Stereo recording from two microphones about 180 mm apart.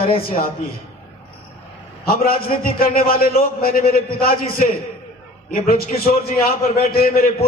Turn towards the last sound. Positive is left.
turn(degrees=55)  # may be behind; listen again after turning